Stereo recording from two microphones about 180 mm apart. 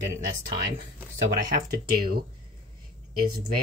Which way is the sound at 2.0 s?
55° right (ahead or behind).